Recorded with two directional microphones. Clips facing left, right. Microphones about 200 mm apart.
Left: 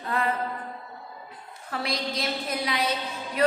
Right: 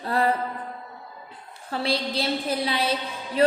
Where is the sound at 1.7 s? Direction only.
30° right (ahead or behind).